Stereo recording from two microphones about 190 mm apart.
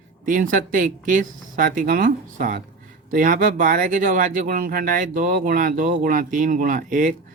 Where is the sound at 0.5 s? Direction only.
45° right (ahead or behind).